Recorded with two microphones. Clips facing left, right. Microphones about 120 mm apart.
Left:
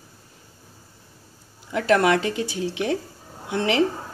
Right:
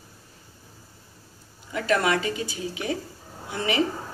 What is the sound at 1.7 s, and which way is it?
A woman's voice, 70° left (ahead or behind).